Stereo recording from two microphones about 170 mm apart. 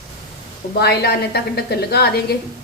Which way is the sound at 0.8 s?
70° left (ahead or behind).